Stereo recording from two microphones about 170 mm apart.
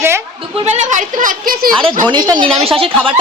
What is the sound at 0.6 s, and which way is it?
A woman's voice, 45° right (ahead or behind).